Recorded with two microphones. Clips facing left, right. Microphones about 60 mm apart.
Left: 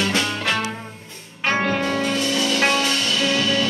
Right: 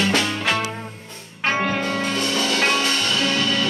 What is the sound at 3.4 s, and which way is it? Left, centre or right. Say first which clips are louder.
Music: left 1 dB; centre.